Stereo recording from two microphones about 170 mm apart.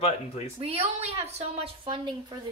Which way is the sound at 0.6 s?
35° right (ahead or behind).